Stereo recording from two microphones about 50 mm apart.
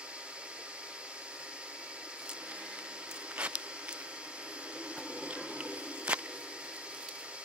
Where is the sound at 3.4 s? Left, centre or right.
Right.